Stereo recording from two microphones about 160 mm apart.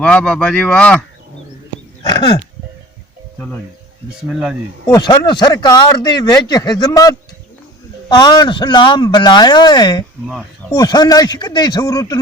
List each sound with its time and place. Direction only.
0.0 s speech: 5° left (ahead or behind)
2.1 s speech: 25° left (ahead or behind)
3.3 s speech: 10° left (ahead or behind)
4.3 s speech: 5° right (ahead or behind)
4.9 s speech: 25° left (ahead or behind)
8.1 s speech: 25° left (ahead or behind)